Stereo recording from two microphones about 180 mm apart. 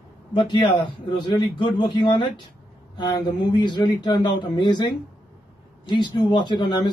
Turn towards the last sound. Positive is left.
turn(degrees=25)  # may be behind; listen again after turning